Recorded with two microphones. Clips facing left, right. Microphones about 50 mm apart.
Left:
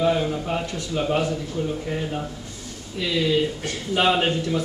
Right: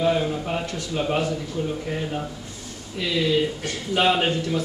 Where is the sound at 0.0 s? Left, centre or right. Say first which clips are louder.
Even; centre.